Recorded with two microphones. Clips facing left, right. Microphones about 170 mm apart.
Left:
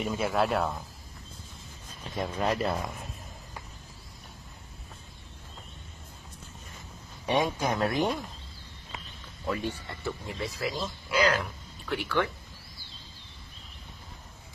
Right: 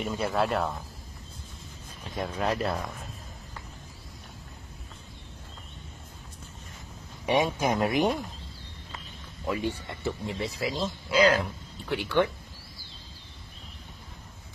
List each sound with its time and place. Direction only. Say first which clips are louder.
0.0 s speech: even; centre (ahead or behind)
2.1 s speech: even; centre (ahead or behind)
7.5 s speech: right 2 dB; 20° right (ahead or behind)
9.5 s speech: right 2 dB; 15° right (ahead or behind)